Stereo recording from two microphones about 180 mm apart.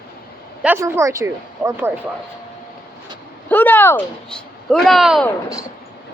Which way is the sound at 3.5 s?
10° left (ahead or behind).